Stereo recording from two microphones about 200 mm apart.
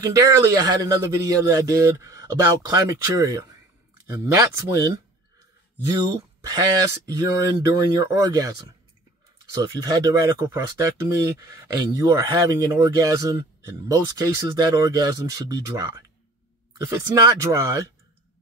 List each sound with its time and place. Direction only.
0.0 s speech: 15° right (ahead or behind)
6.4 s speech: 20° right (ahead or behind)
9.6 s speech: 20° right (ahead or behind)
16.8 s speech: 15° right (ahead or behind)